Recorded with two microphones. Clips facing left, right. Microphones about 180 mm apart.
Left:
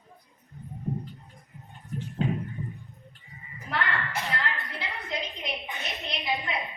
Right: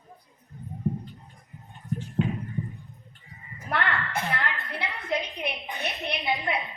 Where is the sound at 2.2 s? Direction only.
35° left (ahead or behind).